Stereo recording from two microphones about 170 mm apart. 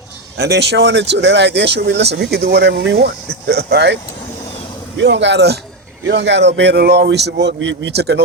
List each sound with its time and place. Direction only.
0.3 s speech: 75° right (ahead or behind)
3.5 s speech: 75° right (ahead or behind)
4.9 s speech: 90° right